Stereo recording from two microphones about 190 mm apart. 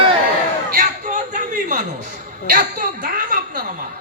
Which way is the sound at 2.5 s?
45° right (ahead or behind).